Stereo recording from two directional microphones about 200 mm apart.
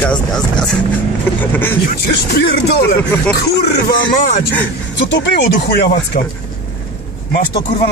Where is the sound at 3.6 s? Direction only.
55° left (ahead or behind).